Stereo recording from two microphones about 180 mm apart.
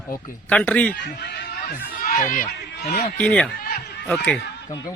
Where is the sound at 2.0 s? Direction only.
50° left (ahead or behind).